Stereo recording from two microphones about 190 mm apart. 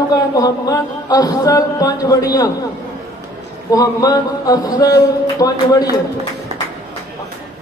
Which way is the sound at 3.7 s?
20° left (ahead or behind).